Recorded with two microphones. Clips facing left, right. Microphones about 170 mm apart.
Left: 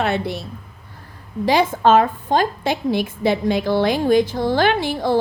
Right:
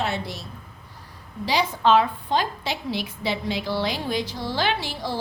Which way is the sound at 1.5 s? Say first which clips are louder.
Left 5 dB; 50° left (ahead or behind).